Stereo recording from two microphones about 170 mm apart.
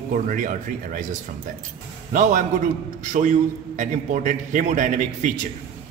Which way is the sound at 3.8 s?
50° right (ahead or behind).